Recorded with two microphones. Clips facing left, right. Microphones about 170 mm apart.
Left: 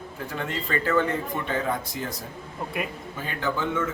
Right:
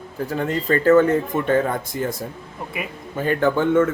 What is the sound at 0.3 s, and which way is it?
Speech, 40° right (ahead or behind).